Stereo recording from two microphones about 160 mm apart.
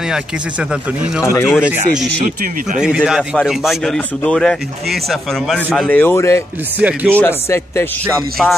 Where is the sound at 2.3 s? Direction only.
60° right (ahead or behind).